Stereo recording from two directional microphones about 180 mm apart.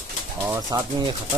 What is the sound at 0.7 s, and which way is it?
Speech, 25° right (ahead or behind).